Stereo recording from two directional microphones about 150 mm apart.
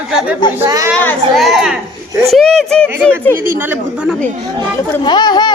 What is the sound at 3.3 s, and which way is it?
Speech, 70° right (ahead or behind).